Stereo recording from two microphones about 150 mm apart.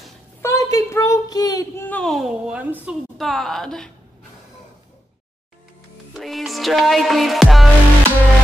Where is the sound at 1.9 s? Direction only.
5° left (ahead or behind).